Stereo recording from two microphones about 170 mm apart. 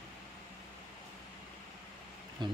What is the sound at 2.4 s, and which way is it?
Speech, 25° right (ahead or behind).